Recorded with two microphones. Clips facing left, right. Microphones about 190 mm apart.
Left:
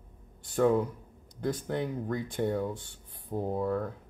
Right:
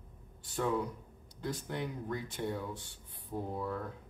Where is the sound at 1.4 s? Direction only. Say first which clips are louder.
Left 6 dB; 50° left (ahead or behind).